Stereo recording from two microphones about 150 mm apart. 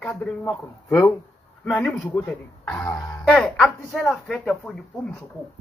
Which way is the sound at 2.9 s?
25° left (ahead or behind).